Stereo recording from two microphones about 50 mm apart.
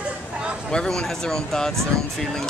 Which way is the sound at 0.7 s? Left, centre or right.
Centre.